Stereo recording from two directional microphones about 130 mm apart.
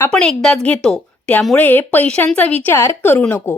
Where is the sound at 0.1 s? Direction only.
5° left (ahead or behind).